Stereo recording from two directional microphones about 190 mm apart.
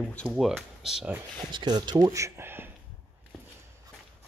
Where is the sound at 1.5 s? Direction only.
25° right (ahead or behind).